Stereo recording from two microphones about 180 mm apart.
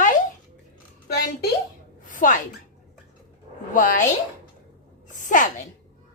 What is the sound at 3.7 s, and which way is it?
Speech, 50° left (ahead or behind).